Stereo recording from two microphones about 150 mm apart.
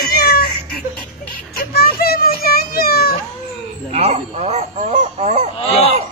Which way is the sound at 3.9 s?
45° right (ahead or behind).